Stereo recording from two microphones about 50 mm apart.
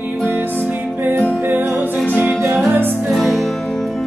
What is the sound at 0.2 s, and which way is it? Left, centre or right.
Music, right.